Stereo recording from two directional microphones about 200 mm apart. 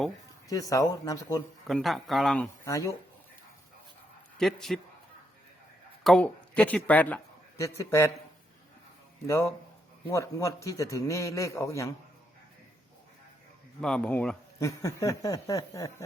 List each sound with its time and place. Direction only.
0.4 s speech: 15° left (ahead or behind)
1.6 s speech: centre (ahead or behind)
2.6 s speech: 15° left (ahead or behind)
4.4 s speech: centre (ahead or behind)
6.0 s a man's voice: centre (ahead or behind)
9.2 s speech: 15° left (ahead or behind)
13.8 s speech: 5° left (ahead or behind)